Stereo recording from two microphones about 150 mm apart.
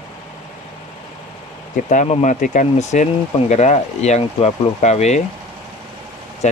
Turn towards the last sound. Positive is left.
turn(degrees=50)  # may be behind; listen again after turning